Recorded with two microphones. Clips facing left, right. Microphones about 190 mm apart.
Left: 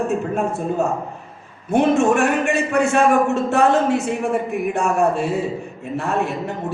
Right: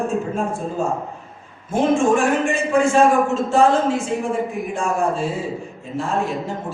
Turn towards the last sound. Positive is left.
turn(degrees=65)  # may be behind; listen again after turning